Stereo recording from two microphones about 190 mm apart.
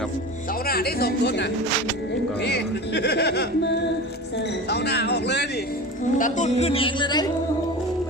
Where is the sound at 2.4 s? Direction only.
60° left (ahead or behind).